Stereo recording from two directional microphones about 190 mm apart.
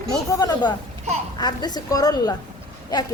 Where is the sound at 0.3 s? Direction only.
20° left (ahead or behind).